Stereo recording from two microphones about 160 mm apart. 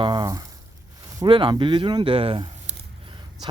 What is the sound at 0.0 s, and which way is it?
Speech, 25° right (ahead or behind).